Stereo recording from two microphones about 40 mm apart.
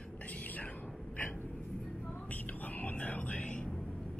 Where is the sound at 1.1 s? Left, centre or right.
Left.